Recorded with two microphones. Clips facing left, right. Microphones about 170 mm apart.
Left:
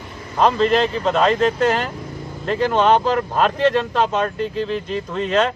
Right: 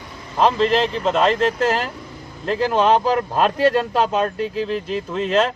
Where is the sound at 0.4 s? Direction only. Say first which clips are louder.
Left 1 dB; centre (ahead or behind).